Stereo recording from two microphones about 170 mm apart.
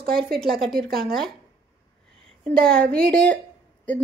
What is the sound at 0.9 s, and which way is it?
Speech, centre (ahead or behind).